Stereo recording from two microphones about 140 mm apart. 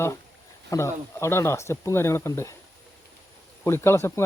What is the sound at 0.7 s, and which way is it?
Speech, 20° left (ahead or behind).